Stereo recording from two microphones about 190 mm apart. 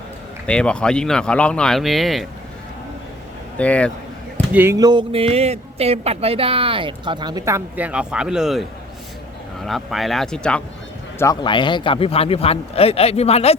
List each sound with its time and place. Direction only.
0.4 s speech: 5° left (ahead or behind)
3.6 s speech: 5° left (ahead or behind)
4.5 s speech: 15° right (ahead or behind); by 10.6 s 5° left (ahead or behind)
11.2 s a man's voice: 20° left (ahead or behind)